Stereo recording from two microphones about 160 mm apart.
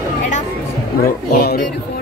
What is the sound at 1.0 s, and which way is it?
Speech, 65° left (ahead or behind).